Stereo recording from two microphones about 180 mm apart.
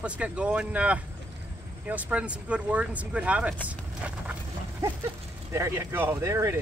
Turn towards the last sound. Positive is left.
turn(degrees=-15)  # may be behind; listen again after turning